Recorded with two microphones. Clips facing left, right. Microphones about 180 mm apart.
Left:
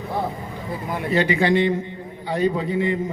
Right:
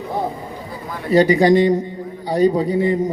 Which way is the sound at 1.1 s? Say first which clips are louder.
Right 7 dB; 40° right (ahead or behind).